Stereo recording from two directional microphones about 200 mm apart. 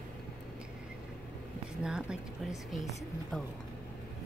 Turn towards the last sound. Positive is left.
turn(degrees=0)  # may be behind; listen again after turning